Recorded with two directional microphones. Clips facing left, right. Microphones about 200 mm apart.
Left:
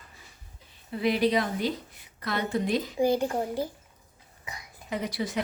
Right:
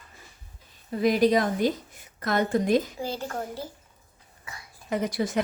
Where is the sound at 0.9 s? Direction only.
45° right (ahead or behind).